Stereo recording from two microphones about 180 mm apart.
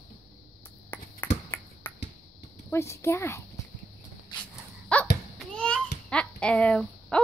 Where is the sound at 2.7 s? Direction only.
15° left (ahead or behind).